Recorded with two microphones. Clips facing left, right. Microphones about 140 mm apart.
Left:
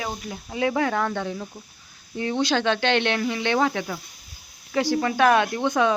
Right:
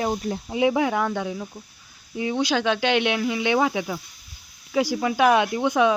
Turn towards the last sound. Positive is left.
turn(degrees=-5)  # may be behind; listen again after turning